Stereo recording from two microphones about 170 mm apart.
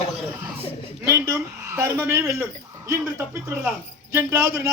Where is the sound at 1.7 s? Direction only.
15° right (ahead or behind).